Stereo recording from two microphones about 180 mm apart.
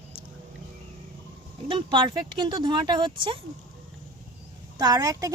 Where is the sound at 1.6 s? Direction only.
25° right (ahead or behind).